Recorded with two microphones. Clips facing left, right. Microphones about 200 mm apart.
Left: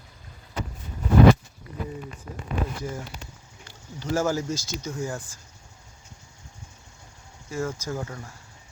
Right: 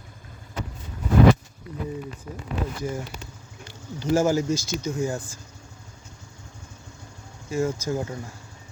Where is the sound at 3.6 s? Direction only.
20° right (ahead or behind).